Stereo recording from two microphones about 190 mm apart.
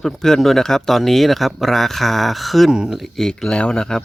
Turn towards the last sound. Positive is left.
turn(degrees=5)  # may be behind; listen again after turning